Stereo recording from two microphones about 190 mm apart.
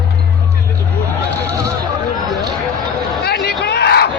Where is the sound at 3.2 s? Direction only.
60° left (ahead or behind).